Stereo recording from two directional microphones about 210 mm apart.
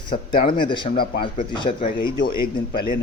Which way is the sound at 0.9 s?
45° left (ahead or behind).